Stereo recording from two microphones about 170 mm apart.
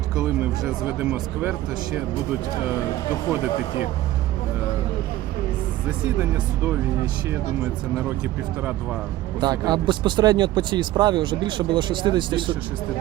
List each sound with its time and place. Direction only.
0.2 s speech: 10° right (ahead or behind)
9.4 s speech: 25° right (ahead or behind)